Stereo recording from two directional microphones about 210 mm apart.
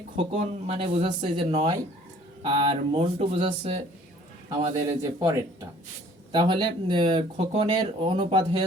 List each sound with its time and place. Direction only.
0.2 s a man's voice: 30° right (ahead or behind)